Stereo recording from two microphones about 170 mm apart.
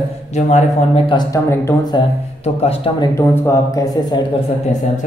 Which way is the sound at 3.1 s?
20° left (ahead or behind).